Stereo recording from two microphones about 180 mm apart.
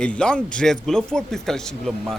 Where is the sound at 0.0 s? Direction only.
5° left (ahead or behind).